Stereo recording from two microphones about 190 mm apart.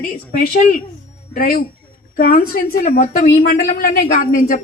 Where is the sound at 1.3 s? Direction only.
50° left (ahead or behind).